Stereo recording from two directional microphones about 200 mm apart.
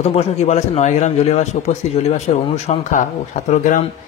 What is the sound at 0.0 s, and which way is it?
A man's voice, 30° left (ahead or behind).